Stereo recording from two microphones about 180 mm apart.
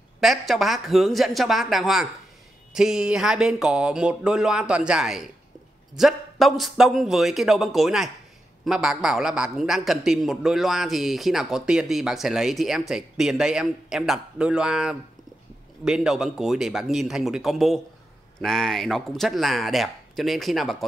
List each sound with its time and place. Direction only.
0.2 s a man's voice: centre (ahead or behind)